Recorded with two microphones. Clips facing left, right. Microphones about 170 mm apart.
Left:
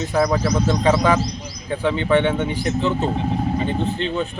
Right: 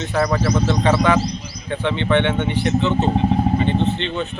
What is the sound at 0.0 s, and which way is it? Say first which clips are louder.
Speech: even; 10° left (ahead or behind).